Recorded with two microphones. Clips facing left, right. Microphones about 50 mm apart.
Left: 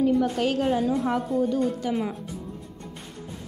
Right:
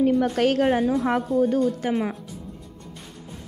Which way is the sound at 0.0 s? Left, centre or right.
Right.